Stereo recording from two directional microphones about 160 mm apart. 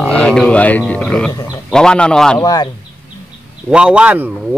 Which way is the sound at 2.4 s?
25° left (ahead or behind).